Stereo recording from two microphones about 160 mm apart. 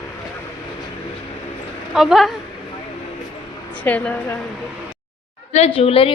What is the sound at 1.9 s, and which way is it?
Speech, centre (ahead or behind).